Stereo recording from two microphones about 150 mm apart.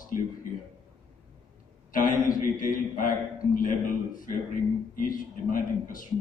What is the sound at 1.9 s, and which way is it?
A man's voice, 65° left (ahead or behind).